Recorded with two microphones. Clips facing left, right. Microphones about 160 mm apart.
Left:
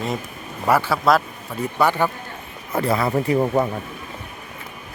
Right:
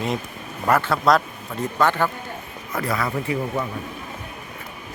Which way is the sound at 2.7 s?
25° left (ahead or behind).